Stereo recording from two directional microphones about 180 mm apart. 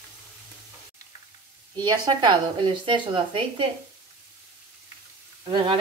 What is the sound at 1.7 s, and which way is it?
Speech, 25° right (ahead or behind).